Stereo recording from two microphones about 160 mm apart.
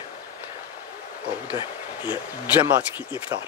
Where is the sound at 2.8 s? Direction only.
10° right (ahead or behind).